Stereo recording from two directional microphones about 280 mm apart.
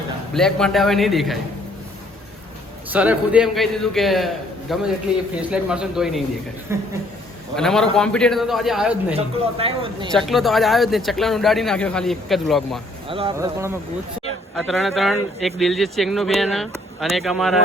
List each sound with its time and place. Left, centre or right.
0.3 s speech: centre
2.9 s speech: centre
7.5 s speech: centre
9.1 s speech: right
10.1 s speech: centre
13.1 s speech: centre
14.5 s speech: centre